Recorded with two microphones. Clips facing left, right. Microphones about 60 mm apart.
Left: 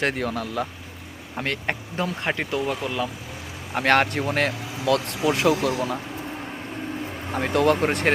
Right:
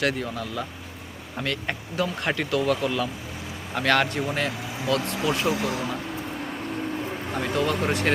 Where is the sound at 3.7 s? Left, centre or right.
Left.